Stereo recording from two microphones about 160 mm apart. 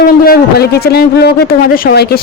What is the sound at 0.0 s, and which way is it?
Speech, 70° left (ahead or behind).